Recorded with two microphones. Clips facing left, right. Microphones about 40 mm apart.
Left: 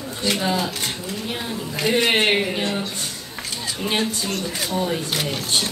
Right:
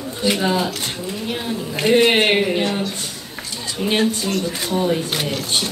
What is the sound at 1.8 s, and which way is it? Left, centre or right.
Speech, right.